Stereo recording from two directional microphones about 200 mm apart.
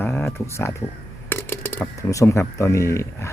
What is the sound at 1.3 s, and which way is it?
Speech, 10° left (ahead or behind).